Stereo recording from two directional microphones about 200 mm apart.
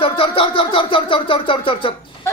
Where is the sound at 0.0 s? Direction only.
25° left (ahead or behind).